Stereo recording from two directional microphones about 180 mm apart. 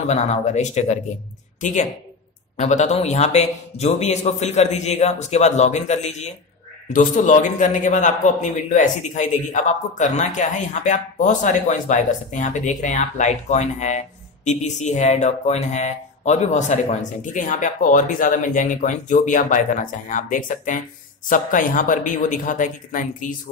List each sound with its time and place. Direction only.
0.1 s a man's voice: 40° left (ahead or behind)